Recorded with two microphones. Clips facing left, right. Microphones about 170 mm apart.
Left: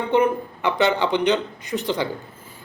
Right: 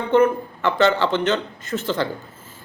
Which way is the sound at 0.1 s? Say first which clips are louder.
Right 3 dB; 15° left (ahead or behind).